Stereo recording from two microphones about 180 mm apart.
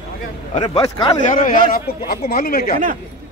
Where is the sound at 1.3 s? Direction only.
50° left (ahead or behind).